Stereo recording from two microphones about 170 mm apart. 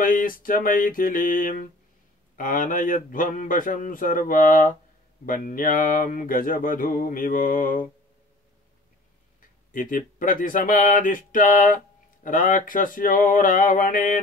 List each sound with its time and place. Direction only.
0.0 s speech: 55° left (ahead or behind)
9.4 s speech: 55° left (ahead or behind)